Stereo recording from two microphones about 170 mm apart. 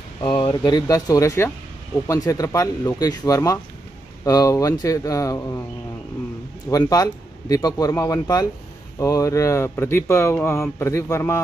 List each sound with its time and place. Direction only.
0.2 s a sound: 25° left (ahead or behind)
0.5 s speech: 20° left (ahead or behind)
6.7 s speech: 20° left (ahead or behind)